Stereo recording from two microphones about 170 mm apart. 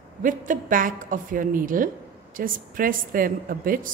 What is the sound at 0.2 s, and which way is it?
A woman's voice, 50° right (ahead or behind).